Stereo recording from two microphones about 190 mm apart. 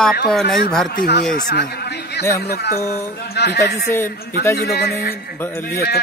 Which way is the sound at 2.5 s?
55° left (ahead or behind).